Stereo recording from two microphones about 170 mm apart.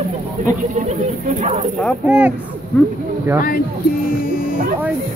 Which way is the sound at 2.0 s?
10° right (ahead or behind).